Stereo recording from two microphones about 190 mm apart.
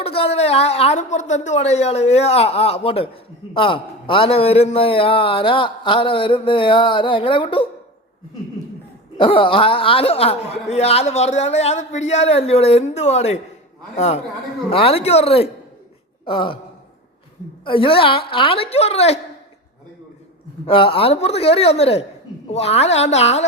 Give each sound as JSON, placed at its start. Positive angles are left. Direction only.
{"t": 0.0, "sound": "a woman's voice", "side_deg": 30}
{"t": 9.1, "sound": "a woman's voice", "side_deg": 25}
{"t": 16.2, "sound": "a sound", "side_deg": 25}
{"t": 17.7, "sound": "a man's voice", "side_deg": 30}
{"t": 20.7, "sound": "a woman's voice", "side_deg": 30}